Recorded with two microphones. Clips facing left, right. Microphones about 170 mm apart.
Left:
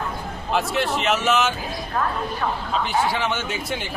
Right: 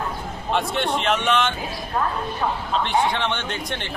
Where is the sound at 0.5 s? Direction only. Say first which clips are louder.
Even; centre (ahead or behind).